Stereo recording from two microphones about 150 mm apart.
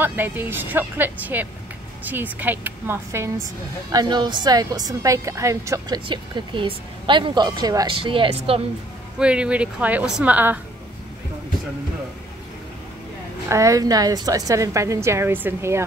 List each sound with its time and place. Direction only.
0.0 s speech: 15° right (ahead or behind)
3.9 s a woman's voice: 30° right (ahead or behind)
6.0 s speech: 35° right (ahead or behind)
9.2 s speech: 5° right (ahead or behind)
13.5 s a woman's voice: 20° right (ahead or behind)